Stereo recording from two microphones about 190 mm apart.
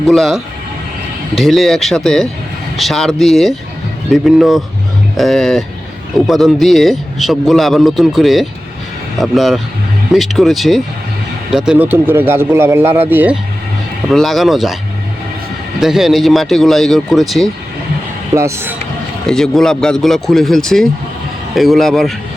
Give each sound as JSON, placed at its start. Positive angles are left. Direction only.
{"t": 0.1, "sound": "a man's voice", "side_deg": 0}
{"t": 15.8, "sound": "a man's voice", "side_deg": 0}
{"t": 18.3, "sound": "speech", "side_deg": -15}
{"t": 19.3, "sound": "a man's voice", "side_deg": 5}